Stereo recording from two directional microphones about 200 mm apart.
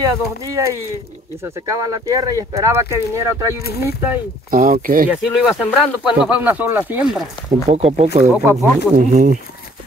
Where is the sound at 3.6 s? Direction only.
50° left (ahead or behind).